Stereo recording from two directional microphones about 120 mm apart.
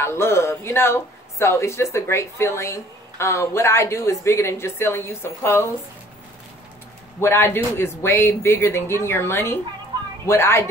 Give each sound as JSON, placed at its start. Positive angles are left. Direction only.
{"t": 0.0, "sound": "speech", "side_deg": 20}
{"t": 7.2, "sound": "speech", "side_deg": 20}